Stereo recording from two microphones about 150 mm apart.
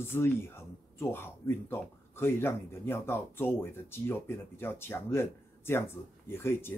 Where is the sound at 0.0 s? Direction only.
15° left (ahead or behind).